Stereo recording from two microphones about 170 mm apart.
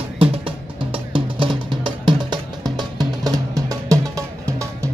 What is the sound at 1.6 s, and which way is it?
Music, 25° right (ahead or behind).